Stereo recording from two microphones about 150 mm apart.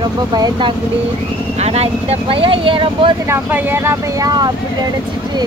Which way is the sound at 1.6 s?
45° right (ahead or behind).